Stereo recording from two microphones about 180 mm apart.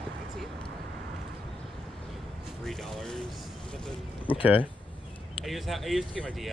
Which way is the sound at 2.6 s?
Centre (ahead or behind).